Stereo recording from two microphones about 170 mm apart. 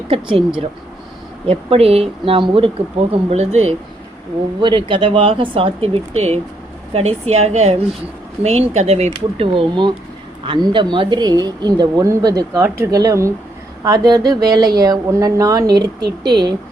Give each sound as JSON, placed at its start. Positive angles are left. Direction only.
{"t": 0.1, "sound": "speech", "side_deg": -30}
{"t": 1.5, "sound": "speech", "side_deg": -35}
{"t": 4.6, "sound": "speech", "side_deg": -30}